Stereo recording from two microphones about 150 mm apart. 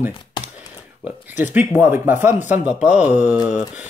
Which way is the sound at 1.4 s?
10° right (ahead or behind).